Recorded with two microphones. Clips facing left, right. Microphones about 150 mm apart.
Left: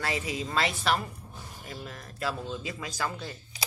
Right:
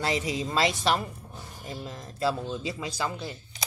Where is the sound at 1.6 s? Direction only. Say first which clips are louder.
Right 4 dB; 20° right (ahead or behind).